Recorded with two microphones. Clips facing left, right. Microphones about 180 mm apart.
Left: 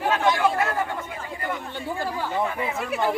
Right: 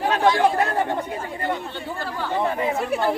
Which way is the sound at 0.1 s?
35° right (ahead or behind).